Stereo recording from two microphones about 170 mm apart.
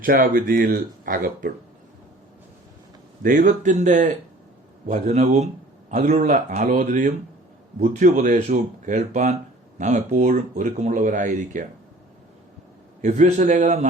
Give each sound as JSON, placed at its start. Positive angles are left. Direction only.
{"t": 0.0, "sound": "speech", "side_deg": -55}
{"t": 3.2, "sound": "speech", "side_deg": -50}
{"t": 13.0, "sound": "speech", "side_deg": -45}